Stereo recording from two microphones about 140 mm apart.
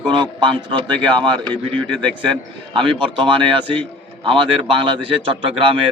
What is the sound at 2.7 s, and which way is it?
A man's voice, 35° right (ahead or behind).